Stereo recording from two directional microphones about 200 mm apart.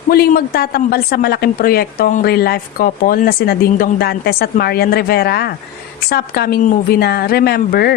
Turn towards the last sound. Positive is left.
turn(degrees=50)  # may be behind; listen again after turning